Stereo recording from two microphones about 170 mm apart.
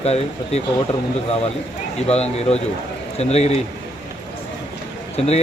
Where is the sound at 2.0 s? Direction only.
35° left (ahead or behind).